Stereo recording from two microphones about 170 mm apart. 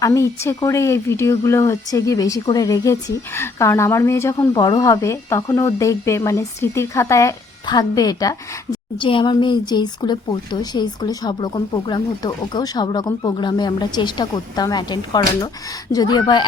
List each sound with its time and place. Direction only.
0.0 s speech: 15° left (ahead or behind)